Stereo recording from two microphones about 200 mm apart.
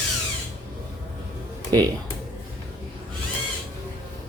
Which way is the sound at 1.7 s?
20° right (ahead or behind).